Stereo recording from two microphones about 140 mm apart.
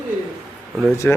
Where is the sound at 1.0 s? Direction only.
10° left (ahead or behind).